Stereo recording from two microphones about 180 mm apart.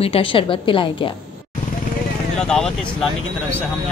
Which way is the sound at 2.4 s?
5° left (ahead or behind).